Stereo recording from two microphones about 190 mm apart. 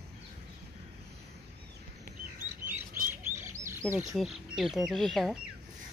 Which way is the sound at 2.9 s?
40° right (ahead or behind).